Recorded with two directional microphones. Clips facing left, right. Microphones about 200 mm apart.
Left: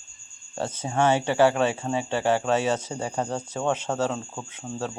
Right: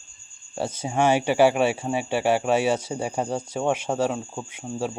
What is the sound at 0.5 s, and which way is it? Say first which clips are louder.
Speech: right 1 dB; 10° right (ahead or behind).